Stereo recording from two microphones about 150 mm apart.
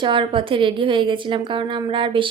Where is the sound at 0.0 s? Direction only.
35° right (ahead or behind).